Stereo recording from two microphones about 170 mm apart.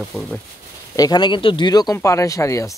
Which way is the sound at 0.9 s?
25° left (ahead or behind).